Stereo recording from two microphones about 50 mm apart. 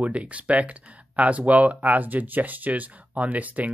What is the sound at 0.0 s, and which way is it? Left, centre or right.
Speech, right.